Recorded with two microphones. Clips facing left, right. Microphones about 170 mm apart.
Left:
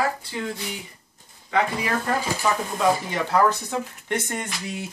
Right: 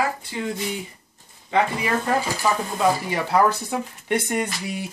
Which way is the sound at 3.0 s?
10° right (ahead or behind).